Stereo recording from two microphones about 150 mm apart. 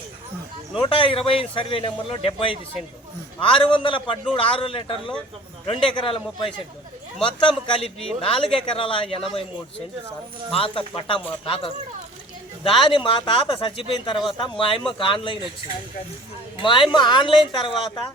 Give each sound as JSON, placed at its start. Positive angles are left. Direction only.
{"t": 0.8, "sound": "a man's voice", "side_deg": 35}
{"t": 10.5, "sound": "a man's voice", "side_deg": 35}
{"t": 16.6, "sound": "a man's voice", "side_deg": 35}